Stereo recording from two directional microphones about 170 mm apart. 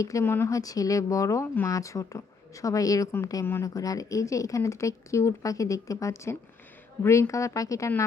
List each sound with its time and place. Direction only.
0.0 s speech: 20° left (ahead or behind)